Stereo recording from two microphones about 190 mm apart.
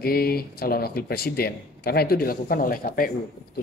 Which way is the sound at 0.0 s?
55° left (ahead or behind).